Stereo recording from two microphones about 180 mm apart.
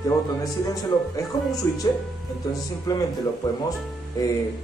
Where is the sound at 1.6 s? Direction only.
15° left (ahead or behind).